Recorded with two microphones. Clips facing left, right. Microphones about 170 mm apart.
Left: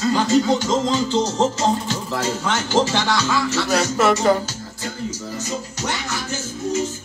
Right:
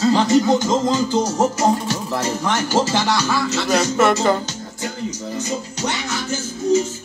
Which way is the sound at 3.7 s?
5° left (ahead or behind).